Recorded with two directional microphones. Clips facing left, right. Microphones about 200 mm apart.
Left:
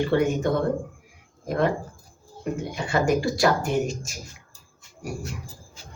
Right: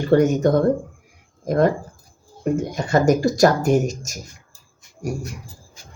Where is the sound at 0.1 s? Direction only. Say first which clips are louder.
Right 6 dB; 40° right (ahead or behind).